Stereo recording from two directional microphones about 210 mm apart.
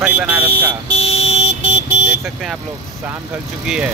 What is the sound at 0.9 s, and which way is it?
Vehicle, 30° left (ahead or behind).